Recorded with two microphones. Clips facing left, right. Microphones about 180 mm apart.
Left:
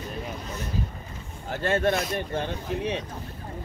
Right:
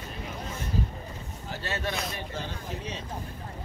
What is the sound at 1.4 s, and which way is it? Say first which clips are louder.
Boat: left 10 dB; 55° left (ahead or behind).